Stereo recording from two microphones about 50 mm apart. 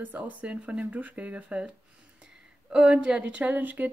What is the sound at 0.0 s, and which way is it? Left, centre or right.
Speech, right.